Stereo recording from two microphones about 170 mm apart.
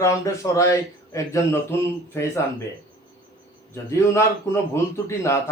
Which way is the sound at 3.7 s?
15° left (ahead or behind).